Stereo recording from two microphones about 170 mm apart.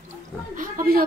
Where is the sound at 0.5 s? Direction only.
55° right (ahead or behind).